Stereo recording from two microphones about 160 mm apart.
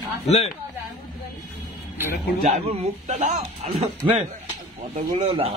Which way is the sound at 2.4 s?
40° right (ahead or behind).